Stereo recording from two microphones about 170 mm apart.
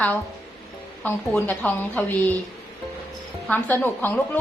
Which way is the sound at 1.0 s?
10° left (ahead or behind).